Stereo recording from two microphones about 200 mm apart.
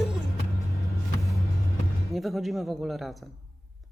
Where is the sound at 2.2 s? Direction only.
Centre (ahead or behind).